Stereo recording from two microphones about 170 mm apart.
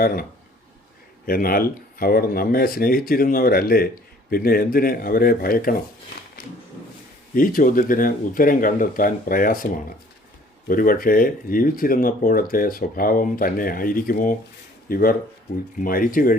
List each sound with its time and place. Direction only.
0.0 s speech: 60° left (ahead or behind)
7.3 s speech: 55° left (ahead or behind)
10.7 s speech: 55° left (ahead or behind)